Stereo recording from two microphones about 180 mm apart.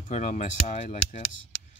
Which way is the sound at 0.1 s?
40° left (ahead or behind).